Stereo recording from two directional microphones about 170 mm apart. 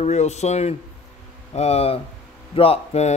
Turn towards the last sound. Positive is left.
turn(degrees=35)  # may be behind; listen again after turning